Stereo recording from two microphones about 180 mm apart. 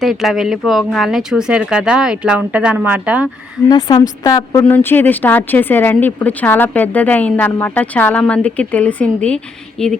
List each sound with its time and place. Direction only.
0.0 s speech: centre (ahead or behind)
3.7 s a woman's voice: 25° left (ahead or behind); by 9.9 s 5° left (ahead or behind)